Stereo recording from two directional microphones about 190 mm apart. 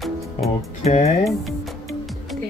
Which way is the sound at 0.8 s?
35° left (ahead or behind).